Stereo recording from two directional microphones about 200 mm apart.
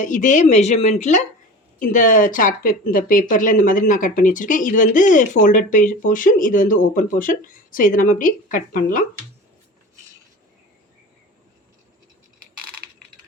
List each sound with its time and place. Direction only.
0.0 s speech: 40° left (ahead or behind)